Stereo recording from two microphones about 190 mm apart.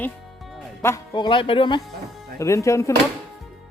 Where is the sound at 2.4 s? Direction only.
15° left (ahead or behind).